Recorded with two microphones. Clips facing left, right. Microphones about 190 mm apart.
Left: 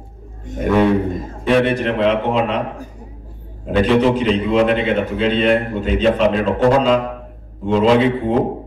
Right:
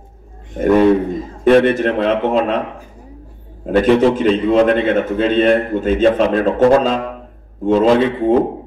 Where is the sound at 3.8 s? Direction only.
50° right (ahead or behind).